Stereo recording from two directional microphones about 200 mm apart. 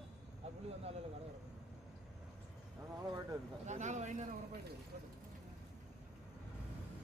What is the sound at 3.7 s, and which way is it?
Speech, 35° right (ahead or behind).